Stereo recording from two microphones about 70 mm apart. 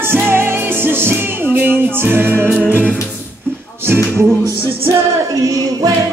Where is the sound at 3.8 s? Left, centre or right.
Right.